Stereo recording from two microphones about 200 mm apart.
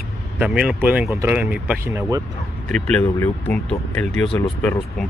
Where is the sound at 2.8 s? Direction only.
5° left (ahead or behind).